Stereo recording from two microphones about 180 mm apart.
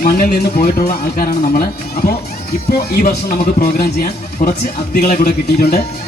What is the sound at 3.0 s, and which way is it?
Speech, 60° left (ahead or behind).